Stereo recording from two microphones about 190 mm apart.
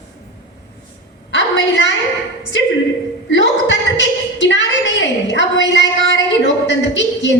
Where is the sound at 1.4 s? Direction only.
70° left (ahead or behind).